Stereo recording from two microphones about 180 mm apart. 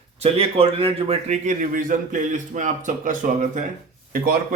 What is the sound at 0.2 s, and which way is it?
Speech, 35° right (ahead or behind).